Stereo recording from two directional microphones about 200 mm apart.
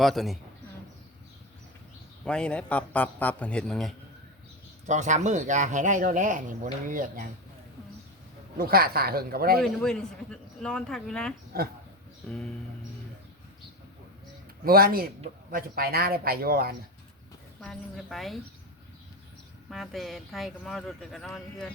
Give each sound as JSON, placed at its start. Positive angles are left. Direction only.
{"t": 0.0, "sound": "speech", "side_deg": 0}
{"t": 2.2, "sound": "speech", "side_deg": 5}
{"t": 4.9, "sound": "speech", "side_deg": -35}
{"t": 8.5, "sound": "speech", "side_deg": -50}
{"t": 9.6, "sound": "speech", "side_deg": 0}
{"t": 14.6, "sound": "speech", "side_deg": -50}
{"t": 17.6, "sound": "speech", "side_deg": 0}
{"t": 19.7, "sound": "speech", "side_deg": 0}